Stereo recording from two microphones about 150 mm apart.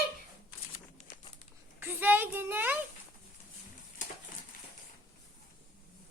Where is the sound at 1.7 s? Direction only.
15° right (ahead or behind).